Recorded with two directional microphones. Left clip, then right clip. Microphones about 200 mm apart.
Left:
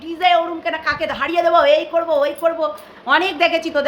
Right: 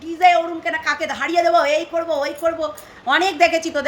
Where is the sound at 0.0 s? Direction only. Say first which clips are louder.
Right 1 dB; 5° left (ahead or behind).